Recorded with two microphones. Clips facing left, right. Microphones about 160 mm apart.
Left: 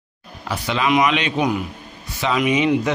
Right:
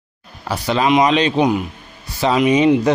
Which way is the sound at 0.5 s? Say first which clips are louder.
Right 4 dB; 35° right (ahead or behind).